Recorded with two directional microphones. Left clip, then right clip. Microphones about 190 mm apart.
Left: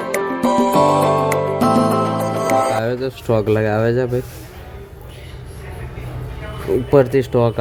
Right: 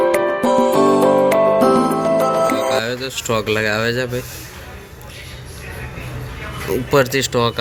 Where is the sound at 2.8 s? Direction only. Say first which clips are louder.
Even; 40° left (ahead or behind).